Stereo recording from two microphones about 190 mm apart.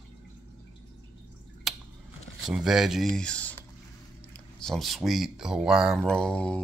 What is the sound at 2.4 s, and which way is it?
Speech, centre (ahead or behind).